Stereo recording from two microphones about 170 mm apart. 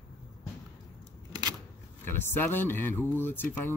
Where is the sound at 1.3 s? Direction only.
25° right (ahead or behind).